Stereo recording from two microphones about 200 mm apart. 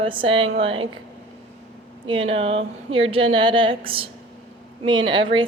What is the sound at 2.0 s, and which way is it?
Speech, 25° right (ahead or behind).